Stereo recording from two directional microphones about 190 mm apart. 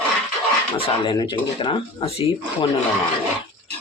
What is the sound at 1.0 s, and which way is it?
Speech, 25° left (ahead or behind).